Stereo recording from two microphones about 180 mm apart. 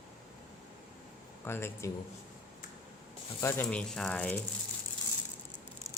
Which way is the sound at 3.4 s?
5° left (ahead or behind).